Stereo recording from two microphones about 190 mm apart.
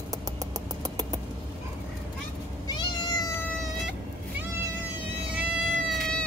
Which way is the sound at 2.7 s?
20° left (ahead or behind).